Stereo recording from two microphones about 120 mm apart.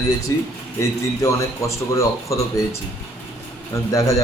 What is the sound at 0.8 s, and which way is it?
Speech, 25° left (ahead or behind).